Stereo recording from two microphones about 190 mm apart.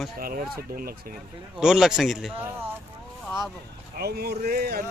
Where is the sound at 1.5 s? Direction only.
5° right (ahead or behind).